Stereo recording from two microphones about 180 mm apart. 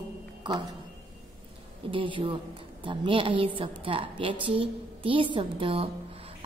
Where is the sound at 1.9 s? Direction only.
30° right (ahead or behind).